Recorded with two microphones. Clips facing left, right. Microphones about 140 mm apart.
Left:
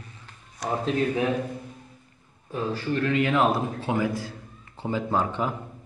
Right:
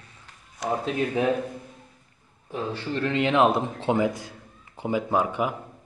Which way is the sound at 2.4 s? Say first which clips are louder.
Left 2 dB; 25° right (ahead or behind).